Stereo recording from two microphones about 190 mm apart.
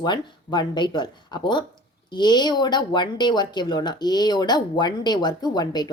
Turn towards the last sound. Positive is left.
turn(degrees=20)  # may be behind; listen again after turning